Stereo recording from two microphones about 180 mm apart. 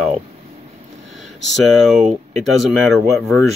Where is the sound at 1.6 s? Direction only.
Centre (ahead or behind).